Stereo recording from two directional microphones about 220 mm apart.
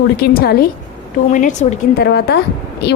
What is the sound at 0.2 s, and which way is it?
A woman's voice, 45° left (ahead or behind).